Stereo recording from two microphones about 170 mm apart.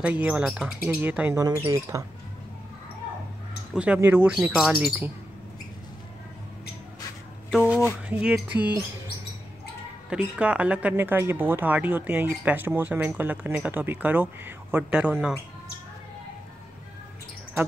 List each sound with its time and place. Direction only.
0.0 s speech: 10° right (ahead or behind)
3.7 s speech: 5° right (ahead or behind)
8.1 s speech: 10° right (ahead or behind)
10.0 s speech: 5° right (ahead or behind)